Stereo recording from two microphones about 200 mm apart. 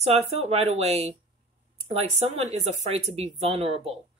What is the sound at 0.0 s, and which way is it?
Speech, 30° right (ahead or behind).